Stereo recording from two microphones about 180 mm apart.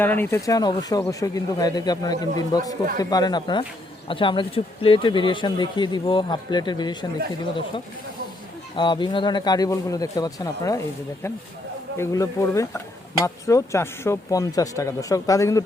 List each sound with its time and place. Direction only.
0.0 s speech: 10° left (ahead or behind)
8.7 s speech: 25° left (ahead or behind)
11.9 s speech: 15° left (ahead or behind)